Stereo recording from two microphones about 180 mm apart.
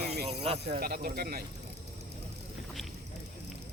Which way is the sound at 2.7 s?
Centre (ahead or behind).